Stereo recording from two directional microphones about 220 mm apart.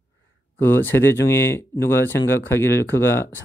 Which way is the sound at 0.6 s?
10° left (ahead or behind).